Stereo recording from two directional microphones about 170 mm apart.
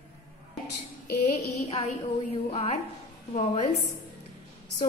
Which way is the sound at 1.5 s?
40° left (ahead or behind).